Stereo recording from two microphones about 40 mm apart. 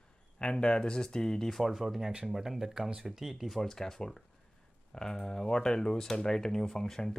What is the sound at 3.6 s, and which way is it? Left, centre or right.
Speech, centre.